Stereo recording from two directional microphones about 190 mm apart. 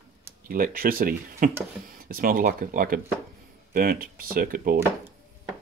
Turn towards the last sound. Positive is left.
turn(degrees=-50)  # may be behind; listen again after turning